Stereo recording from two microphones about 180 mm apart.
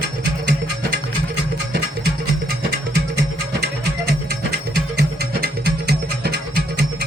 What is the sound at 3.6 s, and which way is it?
Music, 60° right (ahead or behind).